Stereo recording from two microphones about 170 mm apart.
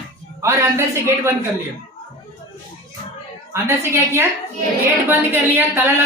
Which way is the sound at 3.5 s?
15° right (ahead or behind).